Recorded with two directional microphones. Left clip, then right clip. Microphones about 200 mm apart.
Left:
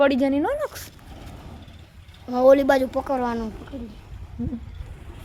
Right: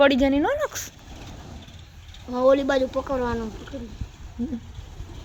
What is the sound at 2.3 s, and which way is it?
Speech, 60° left (ahead or behind).